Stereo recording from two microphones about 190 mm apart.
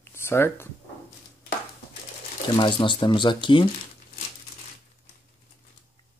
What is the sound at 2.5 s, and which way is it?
Speech, 25° left (ahead or behind).